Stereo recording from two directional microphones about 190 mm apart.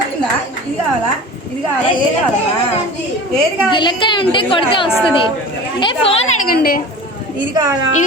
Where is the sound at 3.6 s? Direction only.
25° left (ahead or behind).